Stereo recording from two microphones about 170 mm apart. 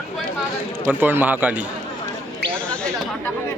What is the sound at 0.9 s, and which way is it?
Speech, 10° right (ahead or behind).